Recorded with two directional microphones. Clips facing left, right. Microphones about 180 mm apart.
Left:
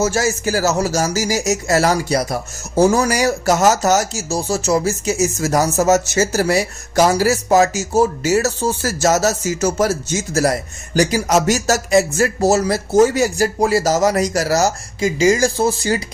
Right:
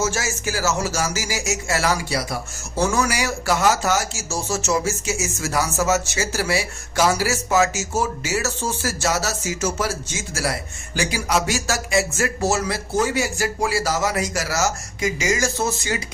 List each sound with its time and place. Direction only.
0.0 s speech: 40° left (ahead or behind)